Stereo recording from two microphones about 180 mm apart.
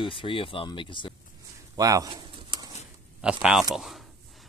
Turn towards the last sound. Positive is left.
turn(degrees=0)  # may be behind; listen again after turning